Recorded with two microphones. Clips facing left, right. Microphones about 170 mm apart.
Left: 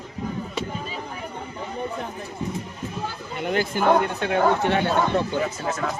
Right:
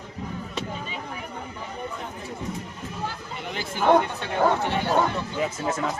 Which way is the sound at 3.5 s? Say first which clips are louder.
Even; 55° left (ahead or behind).